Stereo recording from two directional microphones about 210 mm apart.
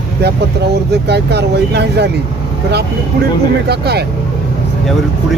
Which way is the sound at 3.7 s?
50° right (ahead or behind).